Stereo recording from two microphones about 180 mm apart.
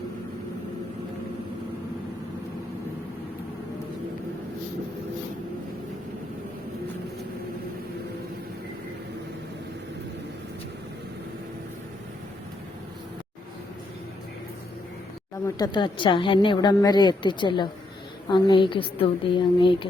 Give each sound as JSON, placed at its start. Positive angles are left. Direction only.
{"t": 15.4, "sound": "a woman's voice", "side_deg": 20}